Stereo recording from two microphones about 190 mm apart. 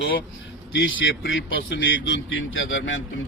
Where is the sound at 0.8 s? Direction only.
90° left.